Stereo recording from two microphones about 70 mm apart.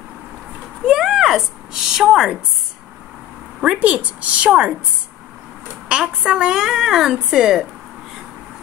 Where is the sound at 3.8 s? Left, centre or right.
Centre.